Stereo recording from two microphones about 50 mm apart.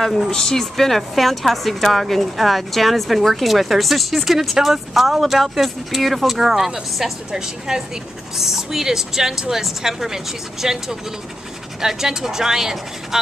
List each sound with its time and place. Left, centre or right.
0.3 s a woman's voice: centre